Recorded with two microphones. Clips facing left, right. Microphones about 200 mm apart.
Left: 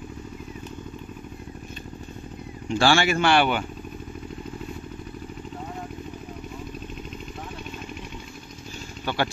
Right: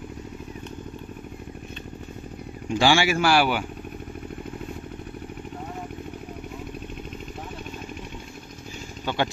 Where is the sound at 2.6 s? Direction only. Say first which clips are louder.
Even; 15° right (ahead or behind).